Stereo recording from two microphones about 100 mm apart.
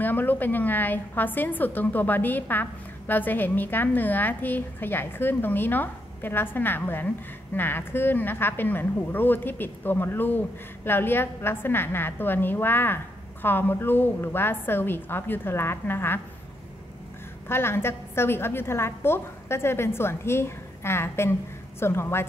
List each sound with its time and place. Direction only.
0.0 s a woman's voice: 20° left (ahead or behind)
17.5 s a woman's voice: 25° left (ahead or behind)